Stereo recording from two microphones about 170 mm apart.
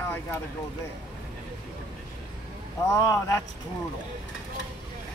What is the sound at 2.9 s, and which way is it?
Speech, 20° left (ahead or behind).